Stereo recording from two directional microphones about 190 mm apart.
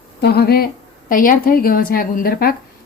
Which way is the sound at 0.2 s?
55° left (ahead or behind).